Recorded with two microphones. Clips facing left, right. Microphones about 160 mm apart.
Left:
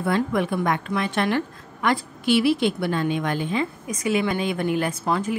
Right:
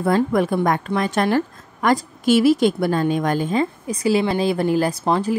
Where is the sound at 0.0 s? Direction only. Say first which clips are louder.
Right 5 dB; 40° right (ahead or behind).